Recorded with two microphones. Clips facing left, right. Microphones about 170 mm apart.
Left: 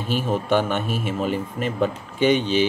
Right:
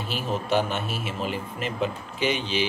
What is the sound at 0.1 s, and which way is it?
A man's voice, 50° left (ahead or behind).